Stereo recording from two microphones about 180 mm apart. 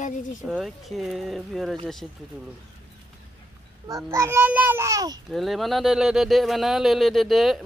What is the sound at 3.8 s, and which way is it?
A child's voice, 20° right (ahead or behind).